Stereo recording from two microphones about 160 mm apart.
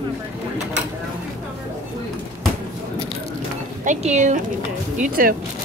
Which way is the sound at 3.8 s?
45° right (ahead or behind).